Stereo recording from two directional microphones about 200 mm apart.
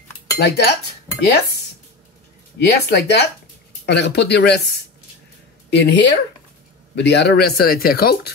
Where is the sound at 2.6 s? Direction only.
55° left (ahead or behind).